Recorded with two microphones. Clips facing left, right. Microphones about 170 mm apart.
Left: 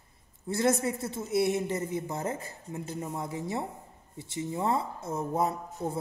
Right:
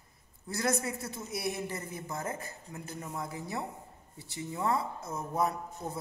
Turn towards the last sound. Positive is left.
turn(degrees=25)  # may be behind; listen again after turning